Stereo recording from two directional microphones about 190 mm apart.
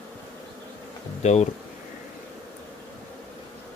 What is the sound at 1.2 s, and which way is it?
Speech, 35° left (ahead or behind).